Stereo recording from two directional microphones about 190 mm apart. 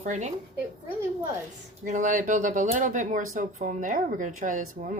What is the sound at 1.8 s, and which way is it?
Speech, 40° right (ahead or behind).